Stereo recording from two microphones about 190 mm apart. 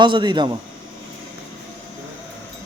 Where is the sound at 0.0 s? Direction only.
25° right (ahead or behind).